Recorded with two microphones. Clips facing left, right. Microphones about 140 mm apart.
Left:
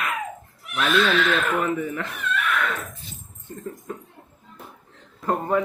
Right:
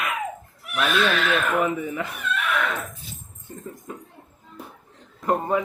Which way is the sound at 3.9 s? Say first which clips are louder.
Left 1 dB; 5° right (ahead or behind).